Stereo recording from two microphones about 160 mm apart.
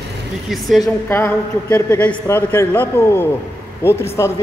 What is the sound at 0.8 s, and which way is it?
A man's voice, 15° left (ahead or behind).